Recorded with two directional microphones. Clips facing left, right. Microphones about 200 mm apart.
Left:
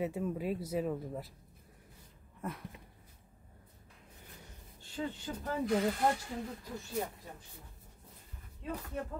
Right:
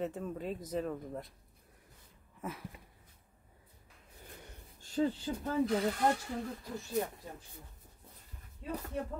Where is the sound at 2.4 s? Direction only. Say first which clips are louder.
Left 1 dB; centre (ahead or behind).